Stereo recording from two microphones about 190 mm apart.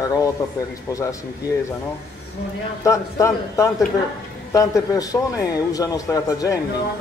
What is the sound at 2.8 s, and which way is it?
A man's voice, 15° left (ahead or behind).